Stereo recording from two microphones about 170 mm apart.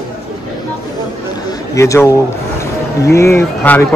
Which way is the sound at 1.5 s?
20° left (ahead or behind).